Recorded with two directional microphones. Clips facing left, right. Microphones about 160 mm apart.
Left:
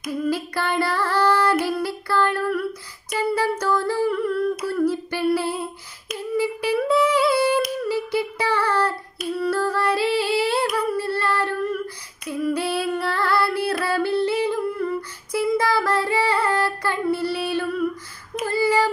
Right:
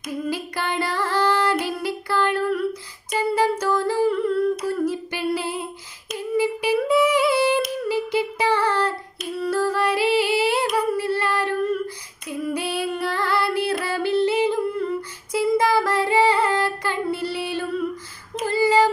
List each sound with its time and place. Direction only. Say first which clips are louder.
0.0 s female singing: left 3 dB; 20° right (ahead or behind)
3.2 s humming: right 1 dB; 15° right (ahead or behind)
12.3 s female singing: left 3 dB; 15° right (ahead or behind)